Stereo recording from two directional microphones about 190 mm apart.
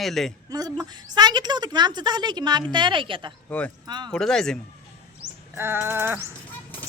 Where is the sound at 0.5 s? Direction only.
20° right (ahead or behind).